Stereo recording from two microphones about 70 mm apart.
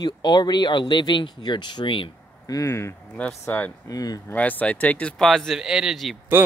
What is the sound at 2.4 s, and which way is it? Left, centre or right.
Speech, left.